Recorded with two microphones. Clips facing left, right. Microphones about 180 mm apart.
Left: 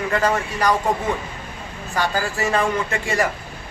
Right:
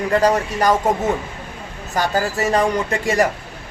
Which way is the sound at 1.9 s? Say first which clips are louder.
Right 3 dB; 40° right (ahead or behind).